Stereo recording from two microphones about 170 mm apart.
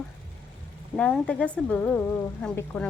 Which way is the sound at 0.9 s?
10° left (ahead or behind).